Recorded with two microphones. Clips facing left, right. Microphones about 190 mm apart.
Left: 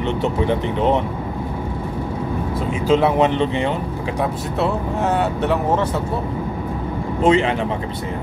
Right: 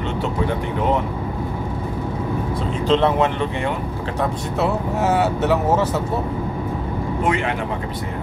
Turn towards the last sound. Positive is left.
turn(degrees=25)  # may be behind; listen again after turning